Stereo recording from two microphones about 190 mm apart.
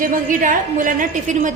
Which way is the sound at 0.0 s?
45° right (ahead or behind).